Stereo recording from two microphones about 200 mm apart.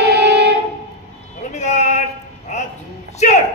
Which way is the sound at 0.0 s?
55° right (ahead or behind).